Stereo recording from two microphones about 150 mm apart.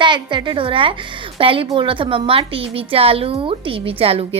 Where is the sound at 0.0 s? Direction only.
30° right (ahead or behind).